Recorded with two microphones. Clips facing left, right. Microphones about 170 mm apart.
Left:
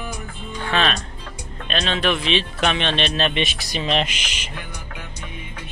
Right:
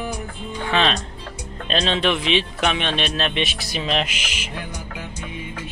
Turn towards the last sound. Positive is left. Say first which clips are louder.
# even
turn(degrees=-5)  # may be behind; listen again after turning